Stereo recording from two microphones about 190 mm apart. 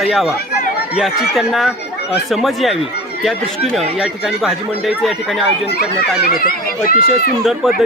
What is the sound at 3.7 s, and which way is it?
Speech, centre (ahead or behind).